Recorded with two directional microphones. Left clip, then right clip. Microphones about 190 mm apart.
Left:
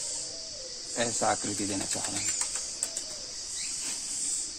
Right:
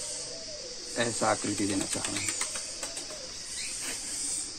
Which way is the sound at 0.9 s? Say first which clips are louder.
Even; 55° left (ahead or behind).